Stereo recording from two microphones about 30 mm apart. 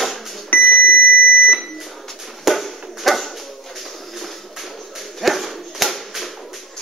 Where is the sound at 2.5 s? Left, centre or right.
Centre.